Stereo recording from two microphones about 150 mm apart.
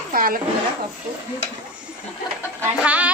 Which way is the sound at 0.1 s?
70° right (ahead or behind).